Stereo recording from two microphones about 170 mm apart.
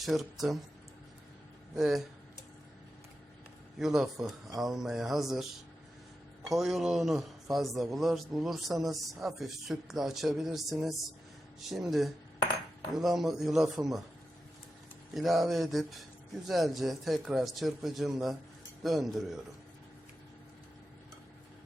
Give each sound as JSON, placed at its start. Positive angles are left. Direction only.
{"t": 0.0, "sound": "a man's voice", "side_deg": 0}
{"t": 1.7, "sound": "a man's voice", "side_deg": 0}
{"t": 3.8, "sound": "a man's voice", "side_deg": 0}
{"t": 6.5, "sound": "a man's voice", "side_deg": 0}
{"t": 15.1, "sound": "a man's voice", "side_deg": 0}